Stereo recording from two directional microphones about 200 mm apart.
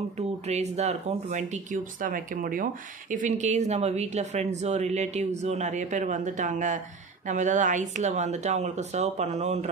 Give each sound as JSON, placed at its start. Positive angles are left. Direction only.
{"t": 0.5, "sound": "speech", "side_deg": -35}